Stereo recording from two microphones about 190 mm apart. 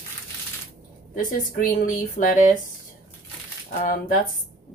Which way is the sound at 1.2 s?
45° left (ahead or behind).